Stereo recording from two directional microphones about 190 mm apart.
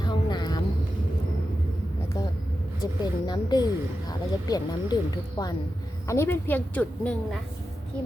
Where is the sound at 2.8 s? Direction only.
20° left (ahead or behind).